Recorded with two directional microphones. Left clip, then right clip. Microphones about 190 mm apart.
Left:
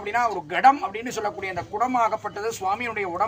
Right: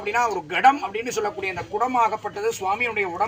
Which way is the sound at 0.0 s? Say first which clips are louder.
Right 1 dB; 20° left (ahead or behind).